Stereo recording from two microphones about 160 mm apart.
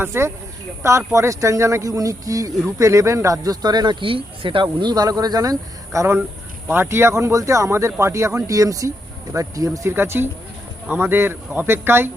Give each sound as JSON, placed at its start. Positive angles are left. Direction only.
{"t": 0.0, "sound": "speech", "side_deg": -15}